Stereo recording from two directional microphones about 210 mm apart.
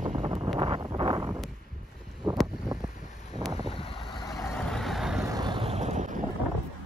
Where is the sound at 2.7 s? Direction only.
15° right (ahead or behind).